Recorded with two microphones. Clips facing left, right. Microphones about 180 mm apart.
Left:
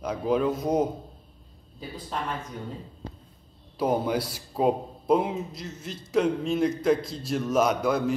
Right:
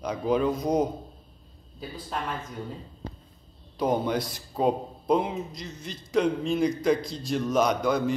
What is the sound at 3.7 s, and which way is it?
A man's voice, 5° left (ahead or behind).